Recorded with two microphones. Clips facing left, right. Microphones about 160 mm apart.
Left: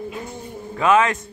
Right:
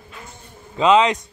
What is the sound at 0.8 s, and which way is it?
Speech, 20° right (ahead or behind).